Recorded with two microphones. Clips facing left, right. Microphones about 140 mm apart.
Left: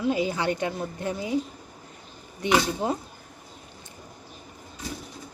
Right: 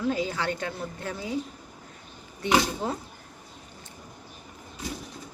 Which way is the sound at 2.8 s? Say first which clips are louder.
Left 3 dB; 15° left (ahead or behind).